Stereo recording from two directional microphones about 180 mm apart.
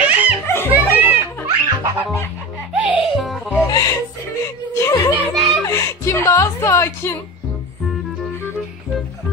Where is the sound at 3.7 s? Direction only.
20° left (ahead or behind).